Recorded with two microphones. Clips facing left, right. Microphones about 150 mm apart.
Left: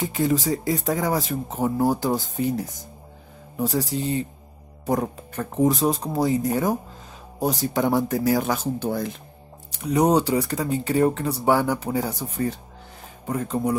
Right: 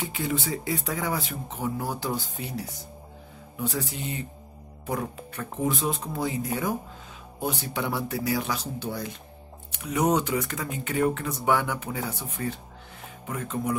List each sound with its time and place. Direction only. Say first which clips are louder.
0.0 s speech: left 7 dB; 45° left (ahead or behind)
9.7 s speech: left 5 dB; 35° left (ahead or behind)